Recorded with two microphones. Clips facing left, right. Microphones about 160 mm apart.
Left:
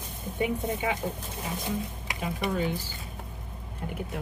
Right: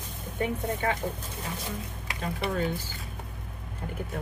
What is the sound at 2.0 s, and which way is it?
Speech, 15° left (ahead or behind).